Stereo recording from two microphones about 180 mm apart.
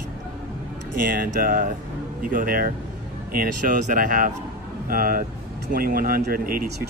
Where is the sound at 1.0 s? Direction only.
50° right (ahead or behind).